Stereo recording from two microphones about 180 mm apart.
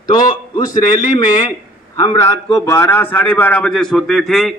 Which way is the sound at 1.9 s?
20° left (ahead or behind).